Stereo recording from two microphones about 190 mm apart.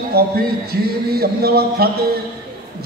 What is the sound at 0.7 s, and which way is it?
A man's voice, 55° right (ahead or behind).